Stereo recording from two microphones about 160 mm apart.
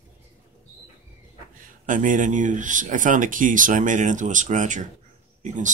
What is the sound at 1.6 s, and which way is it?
Speech, 55° right (ahead or behind).